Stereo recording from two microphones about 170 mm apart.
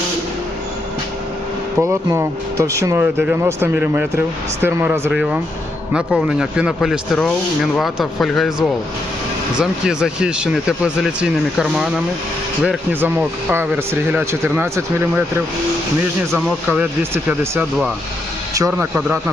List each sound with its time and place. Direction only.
1.8 s speech: 15° right (ahead or behind)
16.3 s speech: 5° right (ahead or behind)